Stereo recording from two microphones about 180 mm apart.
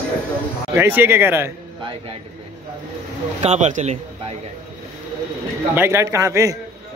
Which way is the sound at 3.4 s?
40° right (ahead or behind).